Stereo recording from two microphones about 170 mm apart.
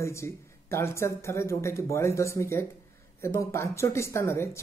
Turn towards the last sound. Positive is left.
turn(degrees=15)  # may be behind; listen again after turning